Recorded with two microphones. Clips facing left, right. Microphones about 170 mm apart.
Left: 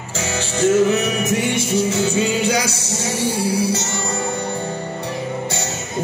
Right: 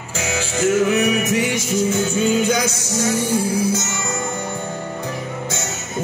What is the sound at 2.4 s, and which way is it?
Music, 35° left (ahead or behind).